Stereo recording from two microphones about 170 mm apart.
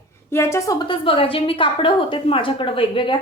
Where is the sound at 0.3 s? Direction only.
15° left (ahead or behind).